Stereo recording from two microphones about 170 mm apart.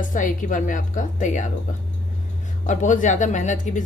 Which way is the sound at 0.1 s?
50° left (ahead or behind).